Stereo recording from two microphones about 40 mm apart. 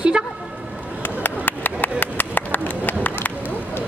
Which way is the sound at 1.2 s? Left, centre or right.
Left.